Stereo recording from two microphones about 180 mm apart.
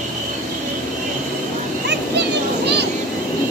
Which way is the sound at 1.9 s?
70° right (ahead or behind).